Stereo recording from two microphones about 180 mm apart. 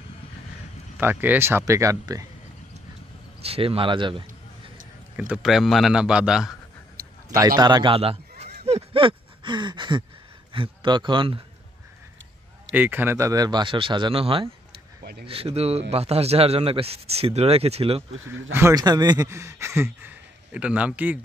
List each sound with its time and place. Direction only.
0.9 s speech: 10° right (ahead or behind)
3.4 s speech: 30° right (ahead or behind)
5.1 s a man's voice: 5° right (ahead or behind)
7.2 s speech: 20° right (ahead or behind); by 8.5 s 35° right (ahead or behind)
8.6 s a sound: 30° right (ahead or behind)
10.5 s speech: 30° right (ahead or behind)
12.7 s speech: 10° right (ahead or behind); by 18.0 s 35° right (ahead or behind)
18.5 s speech: 15° right (ahead or behind)